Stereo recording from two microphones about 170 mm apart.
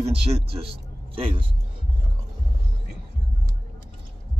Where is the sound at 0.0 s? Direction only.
35° right (ahead or behind).